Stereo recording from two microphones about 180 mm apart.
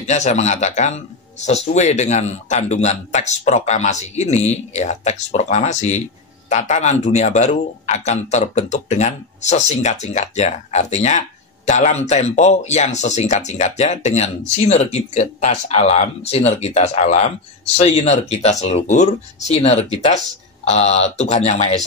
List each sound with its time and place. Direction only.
0.0 s speech: 40° left (ahead or behind)